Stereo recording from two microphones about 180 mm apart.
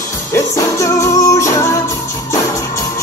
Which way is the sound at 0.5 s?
15° left (ahead or behind).